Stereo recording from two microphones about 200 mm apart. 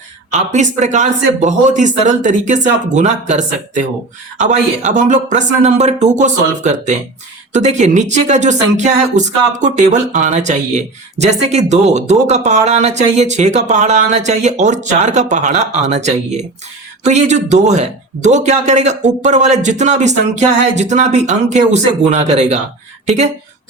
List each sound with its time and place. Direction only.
0.3 s speech: 35° right (ahead or behind)